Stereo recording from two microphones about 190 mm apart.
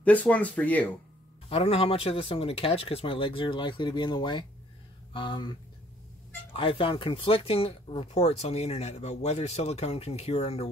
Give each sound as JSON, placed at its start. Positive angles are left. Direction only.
{"t": 0.0, "sound": "speech", "side_deg": 10}
{"t": 1.5, "sound": "speech", "side_deg": 30}